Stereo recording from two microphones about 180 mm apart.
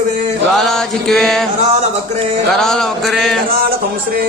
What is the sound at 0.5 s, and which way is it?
Speech, centre (ahead or behind).